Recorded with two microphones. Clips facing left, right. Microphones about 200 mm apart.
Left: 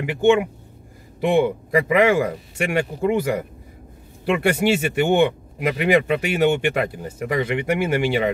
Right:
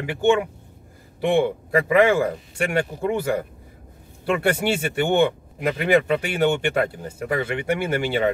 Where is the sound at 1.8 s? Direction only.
15° left (ahead or behind).